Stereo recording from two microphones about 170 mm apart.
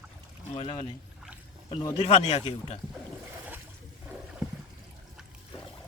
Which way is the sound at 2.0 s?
40° left (ahead or behind).